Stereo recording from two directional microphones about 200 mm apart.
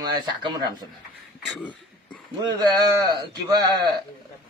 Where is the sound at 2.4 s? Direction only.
20° right (ahead or behind).